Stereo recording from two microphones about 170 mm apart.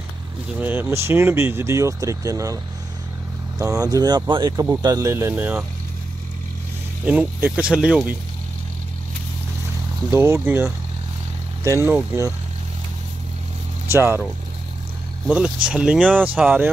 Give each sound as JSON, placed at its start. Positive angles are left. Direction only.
{"t": 0.6, "sound": "speech", "side_deg": -10}
{"t": 7.1, "sound": "speech", "side_deg": -10}
{"t": 10.1, "sound": "speech", "side_deg": -15}
{"t": 13.9, "sound": "speech", "side_deg": -10}
{"t": 15.2, "sound": "speech", "side_deg": -5}